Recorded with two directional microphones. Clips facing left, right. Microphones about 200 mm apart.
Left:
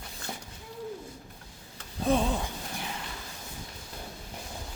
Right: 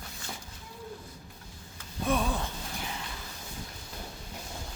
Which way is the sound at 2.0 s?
30° left (ahead or behind).